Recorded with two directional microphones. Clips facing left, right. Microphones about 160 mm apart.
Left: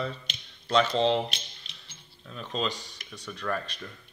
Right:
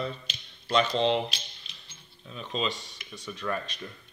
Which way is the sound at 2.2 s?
5° right (ahead or behind).